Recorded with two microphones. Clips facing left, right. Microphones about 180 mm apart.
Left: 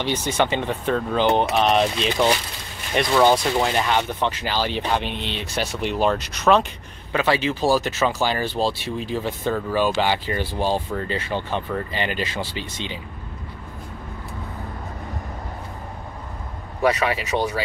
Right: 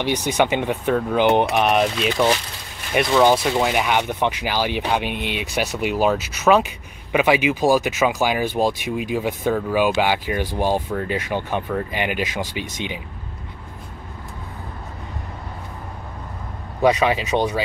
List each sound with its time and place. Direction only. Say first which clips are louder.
0.0 s speech: right 2 dB; 15° right (ahead or behind)
16.8 s speech: right 3 dB; 20° right (ahead or behind)